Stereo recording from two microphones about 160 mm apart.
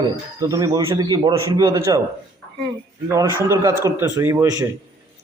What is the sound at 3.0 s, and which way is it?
A man's voice, 20° right (ahead or behind).